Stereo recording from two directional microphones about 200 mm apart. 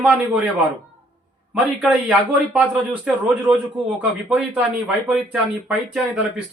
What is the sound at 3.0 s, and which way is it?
A man's voice, 5° right (ahead or behind).